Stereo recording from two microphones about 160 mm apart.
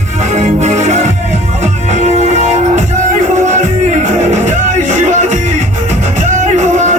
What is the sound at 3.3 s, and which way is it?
Music, 50° right (ahead or behind).